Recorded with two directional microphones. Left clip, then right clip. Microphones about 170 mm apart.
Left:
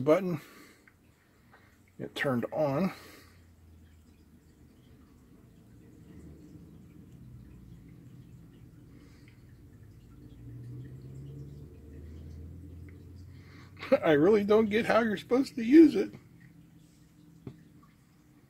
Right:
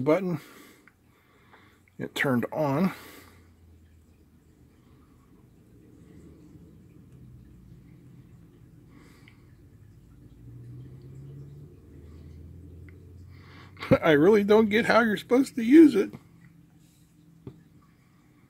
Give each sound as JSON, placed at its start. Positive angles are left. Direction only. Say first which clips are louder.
{"t": 0.0, "sound": "speech", "louder": "right 1 dB", "side_deg": -20}
{"t": 2.0, "sound": "speech", "louder": "right 4 dB", "side_deg": -35}
{"t": 13.5, "sound": "speech", "louder": "right 3 dB", "side_deg": -35}